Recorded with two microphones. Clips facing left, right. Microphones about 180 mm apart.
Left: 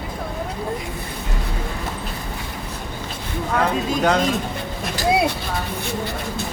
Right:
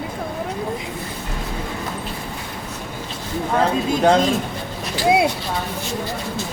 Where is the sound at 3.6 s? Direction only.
30° right (ahead or behind).